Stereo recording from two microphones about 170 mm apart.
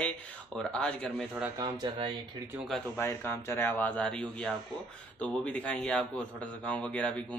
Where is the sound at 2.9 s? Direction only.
15° left (ahead or behind).